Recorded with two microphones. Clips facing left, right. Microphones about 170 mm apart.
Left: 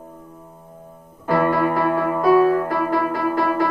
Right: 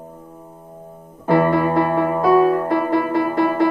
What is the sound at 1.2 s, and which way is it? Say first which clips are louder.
Music: right 3 dB; 25° right (ahead or behind).